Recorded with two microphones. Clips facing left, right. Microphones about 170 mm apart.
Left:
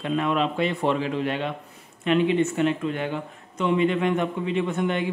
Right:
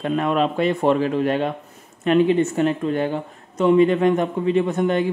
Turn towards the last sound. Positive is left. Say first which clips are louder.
# right 5 dB
turn(degrees=-40)  # may be behind; listen again after turning